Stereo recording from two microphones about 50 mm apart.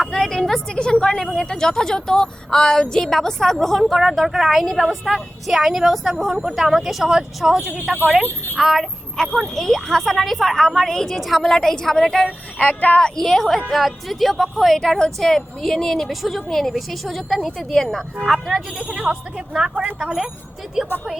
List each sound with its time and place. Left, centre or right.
0.2 s a woman's voice: centre
12.2 s child singing: left
13.0 s a woman's voice: centre